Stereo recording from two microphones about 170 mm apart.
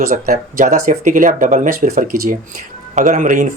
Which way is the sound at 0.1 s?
45° right (ahead or behind).